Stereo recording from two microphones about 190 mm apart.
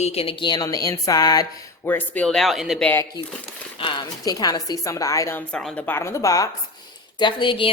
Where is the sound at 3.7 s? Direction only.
25° left (ahead or behind).